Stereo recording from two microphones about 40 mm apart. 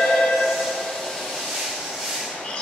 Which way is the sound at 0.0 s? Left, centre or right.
Centre.